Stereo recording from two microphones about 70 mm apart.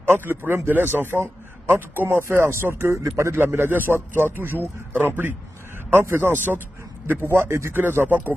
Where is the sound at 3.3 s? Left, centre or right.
Right.